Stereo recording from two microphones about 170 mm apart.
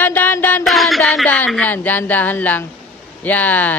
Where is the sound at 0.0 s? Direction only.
10° left (ahead or behind).